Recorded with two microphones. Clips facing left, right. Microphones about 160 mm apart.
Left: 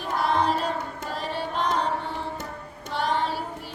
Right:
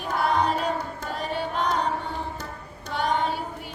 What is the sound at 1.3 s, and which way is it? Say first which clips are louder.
Music: right 1 dB; centre (ahead or behind).